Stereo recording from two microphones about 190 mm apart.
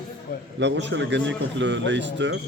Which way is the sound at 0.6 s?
70° right (ahead or behind).